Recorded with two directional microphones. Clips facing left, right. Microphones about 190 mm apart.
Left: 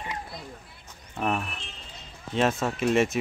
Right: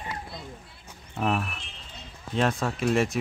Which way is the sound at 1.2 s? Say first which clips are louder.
Right 1 dB; centre (ahead or behind).